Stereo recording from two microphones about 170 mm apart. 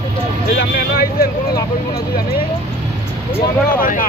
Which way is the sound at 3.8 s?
55° left (ahead or behind).